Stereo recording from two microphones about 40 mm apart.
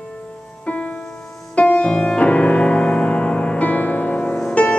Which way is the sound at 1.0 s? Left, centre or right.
Centre.